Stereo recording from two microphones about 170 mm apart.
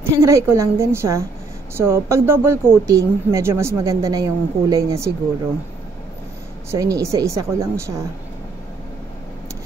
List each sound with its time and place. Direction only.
0.1 s speech: 15° right (ahead or behind)
6.7 s speech: 20° right (ahead or behind)